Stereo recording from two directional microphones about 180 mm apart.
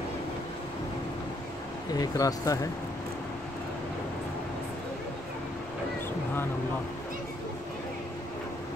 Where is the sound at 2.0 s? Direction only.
20° left (ahead or behind).